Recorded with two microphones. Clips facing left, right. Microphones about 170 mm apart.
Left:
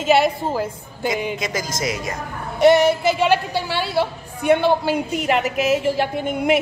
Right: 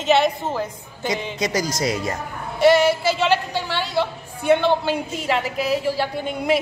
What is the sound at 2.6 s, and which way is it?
A woman's voice, 20° left (ahead or behind).